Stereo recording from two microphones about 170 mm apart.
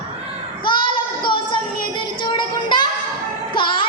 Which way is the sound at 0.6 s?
30° left (ahead or behind).